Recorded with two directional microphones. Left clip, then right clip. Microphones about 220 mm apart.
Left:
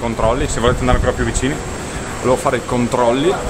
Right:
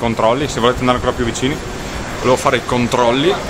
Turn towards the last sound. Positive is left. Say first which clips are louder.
# right 1 dB
turn(degrees=-5)  # may be behind; listen again after turning